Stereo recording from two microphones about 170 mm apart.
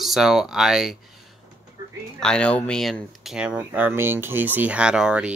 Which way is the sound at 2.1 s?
5° left (ahead or behind).